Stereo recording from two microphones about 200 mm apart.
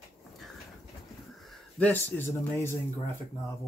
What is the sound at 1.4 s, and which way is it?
Speech, 5° left (ahead or behind).